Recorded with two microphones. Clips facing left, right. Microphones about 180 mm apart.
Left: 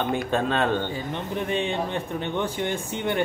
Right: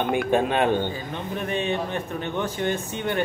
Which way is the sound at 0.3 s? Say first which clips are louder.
Right 3 dB; 15° right (ahead or behind).